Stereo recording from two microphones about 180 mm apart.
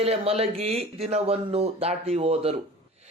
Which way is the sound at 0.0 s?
35° right (ahead or behind).